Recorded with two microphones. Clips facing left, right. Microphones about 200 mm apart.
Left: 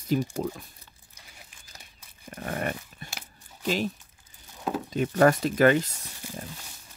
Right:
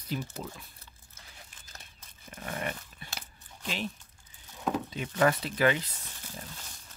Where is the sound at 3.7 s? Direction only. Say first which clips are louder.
Left 8 dB; 40° left (ahead or behind).